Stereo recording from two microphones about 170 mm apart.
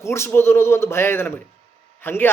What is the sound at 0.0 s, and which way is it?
Speech, 15° left (ahead or behind).